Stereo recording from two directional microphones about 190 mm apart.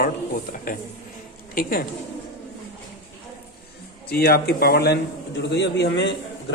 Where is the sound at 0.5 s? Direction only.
45° left (ahead or behind).